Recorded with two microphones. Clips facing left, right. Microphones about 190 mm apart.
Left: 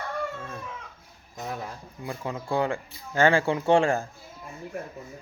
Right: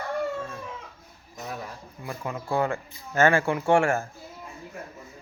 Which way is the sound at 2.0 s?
20° left (ahead or behind).